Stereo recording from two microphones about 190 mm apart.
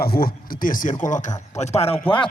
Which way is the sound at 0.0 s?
50° left (ahead or behind).